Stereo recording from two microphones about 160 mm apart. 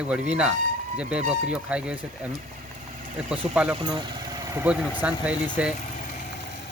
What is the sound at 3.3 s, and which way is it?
Speech, 5° right (ahead or behind).